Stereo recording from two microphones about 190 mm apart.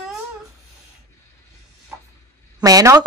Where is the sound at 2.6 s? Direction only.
20° right (ahead or behind).